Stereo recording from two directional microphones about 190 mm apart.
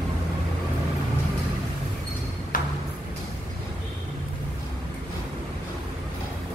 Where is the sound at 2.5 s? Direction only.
45° left (ahead or behind).